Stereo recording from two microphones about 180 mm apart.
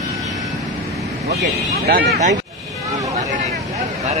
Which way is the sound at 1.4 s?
55° right (ahead or behind).